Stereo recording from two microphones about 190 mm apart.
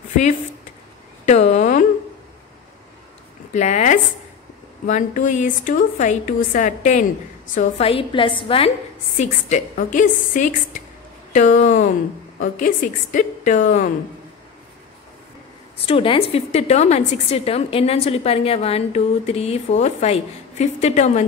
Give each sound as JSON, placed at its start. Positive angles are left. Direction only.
{"t": 1.2, "sound": "a sound", "side_deg": 40}
{"t": 3.5, "sound": "a woman's voice", "side_deg": 40}
{"t": 9.1, "sound": "a woman's voice", "side_deg": 40}
{"t": 15.8, "sound": "a woman's voice", "side_deg": 30}